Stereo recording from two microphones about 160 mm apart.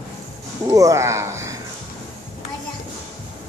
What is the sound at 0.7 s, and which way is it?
Speech, 20° right (ahead or behind).